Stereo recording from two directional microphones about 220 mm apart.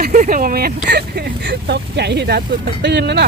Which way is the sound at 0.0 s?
35° right (ahead or behind).